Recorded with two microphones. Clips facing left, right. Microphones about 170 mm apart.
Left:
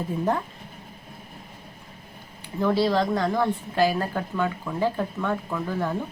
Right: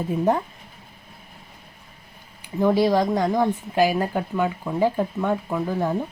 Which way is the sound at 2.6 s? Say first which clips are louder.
Right 3 dB; 15° right (ahead or behind).